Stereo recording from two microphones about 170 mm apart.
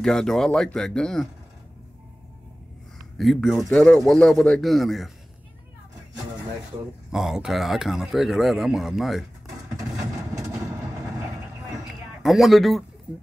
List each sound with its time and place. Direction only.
0.0 s speech: 5° left (ahead or behind)
3.2 s speech: centre (ahead or behind)
7.1 s speech: 5° right (ahead or behind)
9.8 s vehicle: 20° right (ahead or behind)
11.9 s a sound: centre (ahead or behind)